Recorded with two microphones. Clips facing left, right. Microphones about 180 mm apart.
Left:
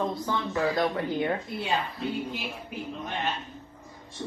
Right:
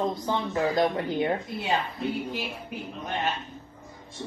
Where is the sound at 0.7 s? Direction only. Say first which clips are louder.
Right 2 dB; 20° right (ahead or behind).